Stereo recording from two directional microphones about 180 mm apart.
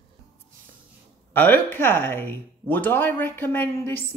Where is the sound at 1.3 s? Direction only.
10° left (ahead or behind).